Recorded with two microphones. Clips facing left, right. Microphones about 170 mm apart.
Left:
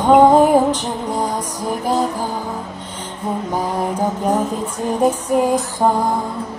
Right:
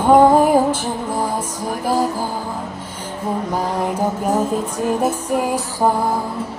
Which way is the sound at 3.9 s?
10° right (ahead or behind).